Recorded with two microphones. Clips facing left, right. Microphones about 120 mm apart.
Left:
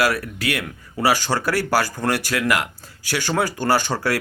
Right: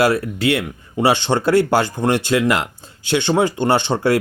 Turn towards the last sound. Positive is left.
turn(degrees=-25)  # may be behind; listen again after turning